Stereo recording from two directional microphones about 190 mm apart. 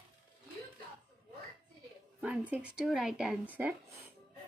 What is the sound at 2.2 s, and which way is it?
Speech, 5° right (ahead or behind).